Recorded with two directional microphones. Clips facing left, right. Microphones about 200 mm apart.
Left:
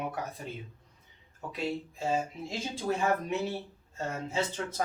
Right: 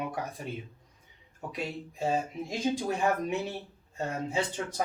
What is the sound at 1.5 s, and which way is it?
Speech, 15° right (ahead or behind).